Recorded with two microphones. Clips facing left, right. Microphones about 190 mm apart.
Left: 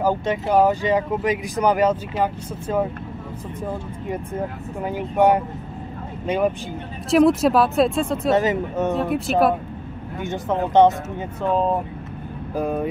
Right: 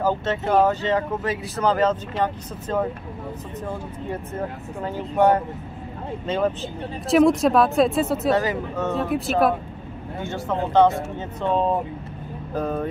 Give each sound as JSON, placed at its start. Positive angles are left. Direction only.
{"t": 0.0, "sound": "speech", "side_deg": 10}
{"t": 4.8, "sound": "speech", "side_deg": 15}
{"t": 7.1, "sound": "speech", "side_deg": 0}
{"t": 8.3, "sound": "speech", "side_deg": 20}
{"t": 8.9, "sound": "speech", "side_deg": 0}
{"t": 10.2, "sound": "speech", "side_deg": 20}
{"t": 12.5, "sound": "speech", "side_deg": 10}